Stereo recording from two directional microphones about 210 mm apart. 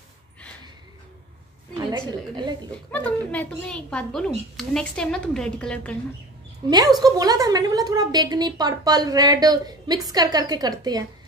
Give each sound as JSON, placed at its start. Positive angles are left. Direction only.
{"t": 1.9, "sound": "a woman's voice", "side_deg": -20}
{"t": 2.7, "sound": "a woman's voice", "side_deg": 5}
{"t": 6.7, "sound": "a woman's voice", "side_deg": -20}